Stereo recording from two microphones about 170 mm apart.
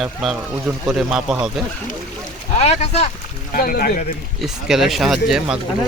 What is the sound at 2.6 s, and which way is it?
Speech, 40° left (ahead or behind).